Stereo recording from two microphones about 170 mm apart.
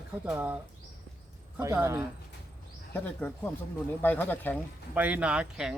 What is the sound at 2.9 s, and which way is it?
Speech, 10° left (ahead or behind).